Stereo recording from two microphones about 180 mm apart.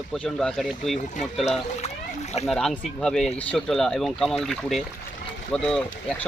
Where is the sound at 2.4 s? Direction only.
Centre (ahead or behind).